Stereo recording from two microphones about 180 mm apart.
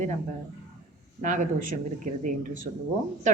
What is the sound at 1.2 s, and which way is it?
Speech, 45° right (ahead or behind).